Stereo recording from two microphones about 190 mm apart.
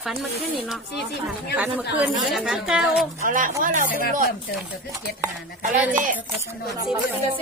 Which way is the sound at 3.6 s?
45° right (ahead or behind).